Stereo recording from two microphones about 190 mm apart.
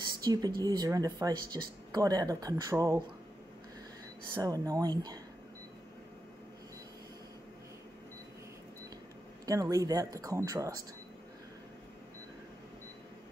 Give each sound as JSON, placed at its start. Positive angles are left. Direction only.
{"t": 0.2, "sound": "speech", "side_deg": -20}
{"t": 4.4, "sound": "speech", "side_deg": -15}
{"t": 9.5, "sound": "speech", "side_deg": -20}